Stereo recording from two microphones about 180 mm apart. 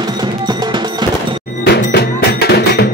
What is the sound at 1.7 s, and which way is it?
Cowbell, 65° left (ahead or behind).